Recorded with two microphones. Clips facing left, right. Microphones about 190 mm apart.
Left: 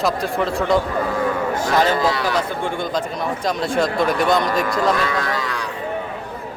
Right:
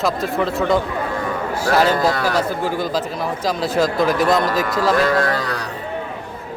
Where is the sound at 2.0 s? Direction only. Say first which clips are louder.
Right 1 dB; 45° right (ahead or behind).